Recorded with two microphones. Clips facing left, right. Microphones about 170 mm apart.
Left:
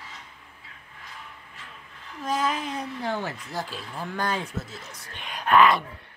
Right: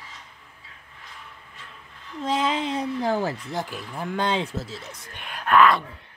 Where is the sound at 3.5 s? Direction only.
20° right (ahead or behind).